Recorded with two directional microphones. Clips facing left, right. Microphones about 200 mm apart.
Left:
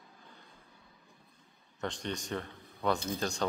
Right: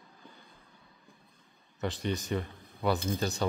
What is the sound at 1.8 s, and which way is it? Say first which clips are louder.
Speech: right 4 dB; 5° right (ahead or behind).